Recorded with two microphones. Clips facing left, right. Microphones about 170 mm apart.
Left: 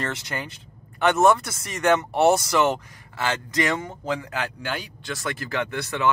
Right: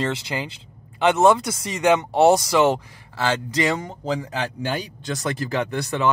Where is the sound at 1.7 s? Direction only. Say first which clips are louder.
Right 2 dB; 15° right (ahead or behind).